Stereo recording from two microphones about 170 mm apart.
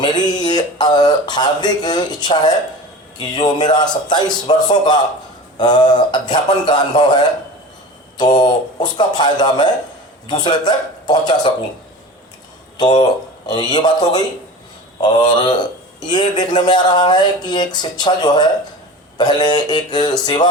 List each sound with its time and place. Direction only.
0.0 s a man's voice: 25° left (ahead or behind)
12.7 s a man's voice: 25° left (ahead or behind)